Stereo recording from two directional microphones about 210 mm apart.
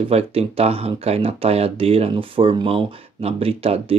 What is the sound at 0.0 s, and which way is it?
Speech, 30° right (ahead or behind).